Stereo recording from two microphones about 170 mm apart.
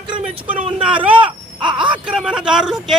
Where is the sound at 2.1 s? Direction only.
5° right (ahead or behind).